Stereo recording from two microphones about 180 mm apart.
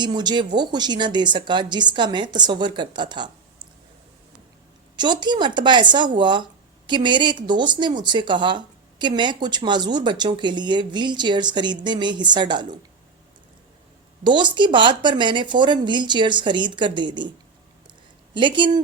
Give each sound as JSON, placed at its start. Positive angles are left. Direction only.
{"t": 0.0, "sound": "speech", "side_deg": -25}
{"t": 4.9, "sound": "speech", "side_deg": -25}
{"t": 14.3, "sound": "speech", "side_deg": -25}
{"t": 18.3, "sound": "speech", "side_deg": -25}